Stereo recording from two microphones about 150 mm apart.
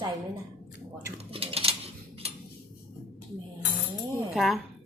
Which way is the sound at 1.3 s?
40° right (ahead or behind).